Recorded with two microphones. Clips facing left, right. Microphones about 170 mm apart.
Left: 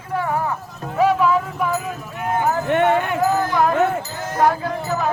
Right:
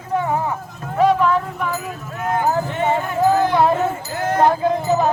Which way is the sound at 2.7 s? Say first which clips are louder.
Left 3 dB; 65° left (ahead or behind).